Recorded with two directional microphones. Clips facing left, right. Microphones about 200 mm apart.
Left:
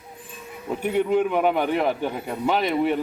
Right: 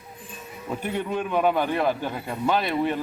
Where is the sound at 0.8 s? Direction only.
15° left (ahead or behind).